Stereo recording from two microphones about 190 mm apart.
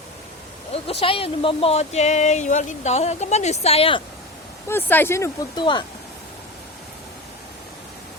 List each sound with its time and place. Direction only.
0.7 s speech: 30° left (ahead or behind)
4.7 s speech: 10° left (ahead or behind)